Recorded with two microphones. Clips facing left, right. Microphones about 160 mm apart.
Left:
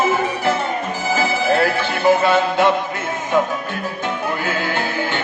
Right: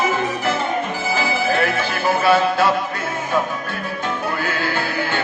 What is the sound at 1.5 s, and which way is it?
Music, 25° left (ahead or behind).